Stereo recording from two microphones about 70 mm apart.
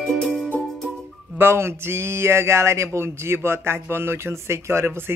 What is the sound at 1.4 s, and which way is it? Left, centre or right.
Speech, right.